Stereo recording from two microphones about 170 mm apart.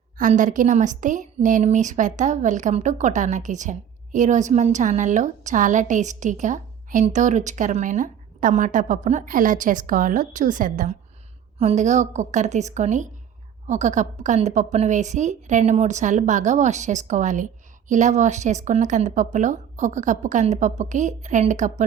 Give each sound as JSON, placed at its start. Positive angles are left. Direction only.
{"t": 0.2, "sound": "a woman's voice", "side_deg": -50}